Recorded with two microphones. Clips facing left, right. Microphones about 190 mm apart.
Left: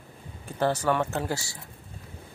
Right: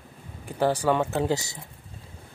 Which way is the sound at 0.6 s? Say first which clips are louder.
Right 2 dB; 15° right (ahead or behind).